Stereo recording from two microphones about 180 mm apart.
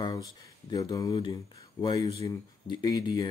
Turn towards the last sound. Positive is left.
turn(degrees=20)  # may be behind; listen again after turning